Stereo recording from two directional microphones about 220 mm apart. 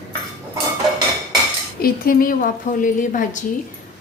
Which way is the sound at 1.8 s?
40° left (ahead or behind).